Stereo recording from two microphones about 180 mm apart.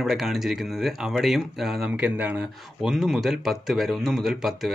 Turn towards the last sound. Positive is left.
turn(degrees=0)  # may be behind; listen again after turning